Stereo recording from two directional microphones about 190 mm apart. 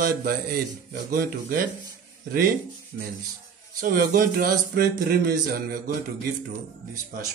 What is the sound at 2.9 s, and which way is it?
A man's voice, 60° right (ahead or behind).